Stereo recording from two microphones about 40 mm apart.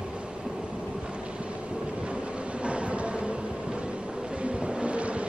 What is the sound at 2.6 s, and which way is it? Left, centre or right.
Train, right.